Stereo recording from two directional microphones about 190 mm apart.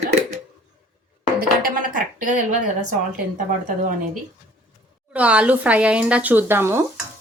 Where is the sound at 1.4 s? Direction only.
50° right (ahead or behind).